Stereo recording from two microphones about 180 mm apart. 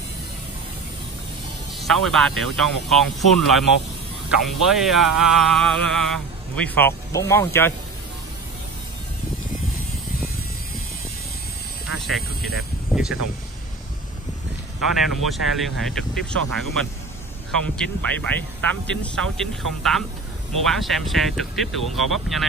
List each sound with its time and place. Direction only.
1.8 s speech: centre (ahead or behind)
12.2 s speech: 60° left (ahead or behind)
12.9 s speech: 5° right (ahead or behind)
15.0 s speech: centre (ahead or behind)